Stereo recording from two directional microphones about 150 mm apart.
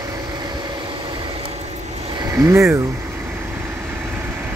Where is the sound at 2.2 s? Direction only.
20° right (ahead or behind).